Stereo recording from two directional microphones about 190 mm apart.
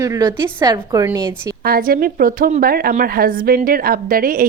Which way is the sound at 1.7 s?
50° right (ahead or behind).